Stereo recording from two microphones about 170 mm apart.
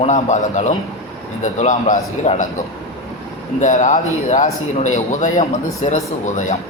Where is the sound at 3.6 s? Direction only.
45° left (ahead or behind).